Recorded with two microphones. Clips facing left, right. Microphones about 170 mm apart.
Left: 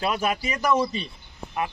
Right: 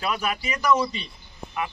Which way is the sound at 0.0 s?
40° left (ahead or behind).